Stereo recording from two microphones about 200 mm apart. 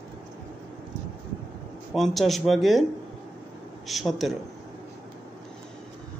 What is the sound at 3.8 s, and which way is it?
Speech, centre (ahead or behind).